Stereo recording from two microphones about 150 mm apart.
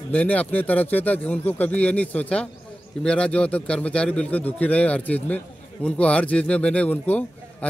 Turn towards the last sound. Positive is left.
turn(degrees=10)  # may be behind; listen again after turning